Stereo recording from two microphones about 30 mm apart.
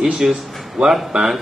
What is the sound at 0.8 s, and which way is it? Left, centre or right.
Speech, right.